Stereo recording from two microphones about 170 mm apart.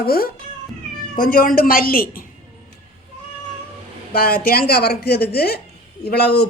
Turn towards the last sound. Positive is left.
turn(degrees=70)  # may be behind; listen again after turning